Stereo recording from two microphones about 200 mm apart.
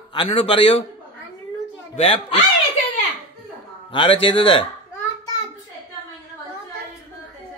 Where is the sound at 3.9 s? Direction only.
25° left (ahead or behind).